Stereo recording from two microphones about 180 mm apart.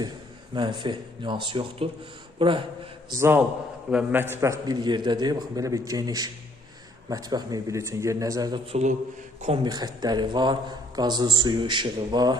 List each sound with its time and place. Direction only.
0.5 s a man's voice: 25° right (ahead or behind)
3.1 s a man's voice: 15° right (ahead or behind)